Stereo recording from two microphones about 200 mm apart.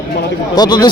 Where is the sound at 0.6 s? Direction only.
20° left (ahead or behind).